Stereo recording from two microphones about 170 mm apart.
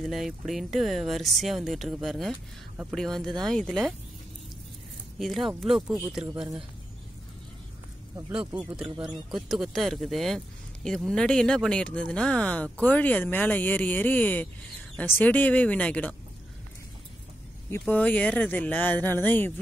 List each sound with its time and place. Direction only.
0.0 s speech: centre (ahead or behind)
5.2 s speech: centre (ahead or behind)
8.3 s speech: 5° right (ahead or behind)
8.8 s speech: 25° right (ahead or behind)
9.3 s speech: centre (ahead or behind)
17.6 s speech: 10° left (ahead or behind)